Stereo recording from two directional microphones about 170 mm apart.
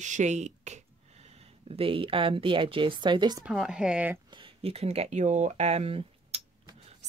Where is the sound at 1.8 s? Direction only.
30° right (ahead or behind).